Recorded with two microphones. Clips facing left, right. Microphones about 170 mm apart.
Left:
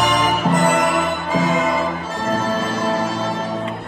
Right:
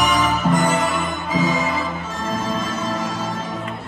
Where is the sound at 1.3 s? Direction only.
65° left (ahead or behind).